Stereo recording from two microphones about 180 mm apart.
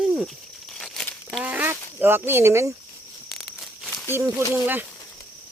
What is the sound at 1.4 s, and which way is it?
Speech, 10° right (ahead or behind).